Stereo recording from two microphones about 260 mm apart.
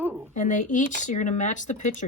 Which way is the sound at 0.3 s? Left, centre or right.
Left.